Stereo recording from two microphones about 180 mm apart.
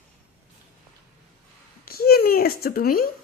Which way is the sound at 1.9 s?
60° left (ahead or behind).